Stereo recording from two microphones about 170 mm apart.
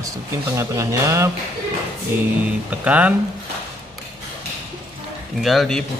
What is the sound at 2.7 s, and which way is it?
Speech, 10° right (ahead or behind).